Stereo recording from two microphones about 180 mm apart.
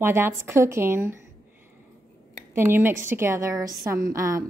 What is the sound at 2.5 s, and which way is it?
A woman's voice, 10° right (ahead or behind).